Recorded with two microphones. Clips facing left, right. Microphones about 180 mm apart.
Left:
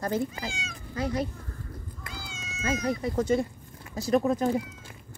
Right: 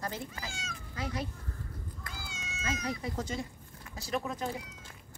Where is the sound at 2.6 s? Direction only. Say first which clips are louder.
Left 8 dB; 45° left (ahead or behind).